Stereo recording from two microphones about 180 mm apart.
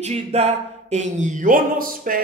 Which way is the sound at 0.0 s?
35° right (ahead or behind).